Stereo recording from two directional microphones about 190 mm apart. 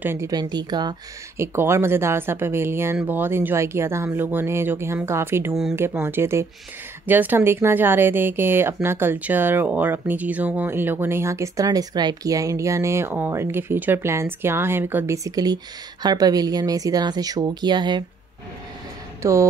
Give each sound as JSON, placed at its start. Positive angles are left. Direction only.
{"t": 0.0, "sound": "speech", "side_deg": -15}
{"t": 19.2, "sound": "speech", "side_deg": -15}